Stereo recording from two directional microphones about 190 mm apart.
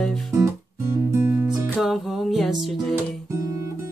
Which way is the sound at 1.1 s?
10° right (ahead or behind).